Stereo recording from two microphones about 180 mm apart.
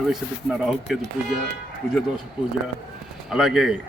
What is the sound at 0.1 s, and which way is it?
Speech, centre (ahead or behind).